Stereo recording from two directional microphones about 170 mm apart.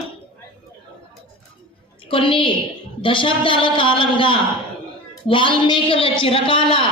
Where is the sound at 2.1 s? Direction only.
30° left (ahead or behind).